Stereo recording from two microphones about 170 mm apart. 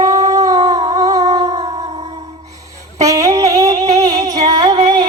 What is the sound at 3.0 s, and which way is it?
Music, 20° right (ahead or behind).